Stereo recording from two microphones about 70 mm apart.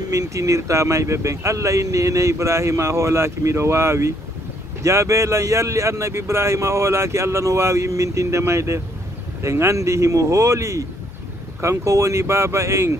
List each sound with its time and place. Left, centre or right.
0.1 s speech: right